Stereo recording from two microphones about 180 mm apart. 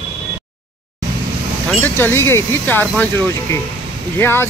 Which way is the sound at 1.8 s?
10° left (ahead or behind).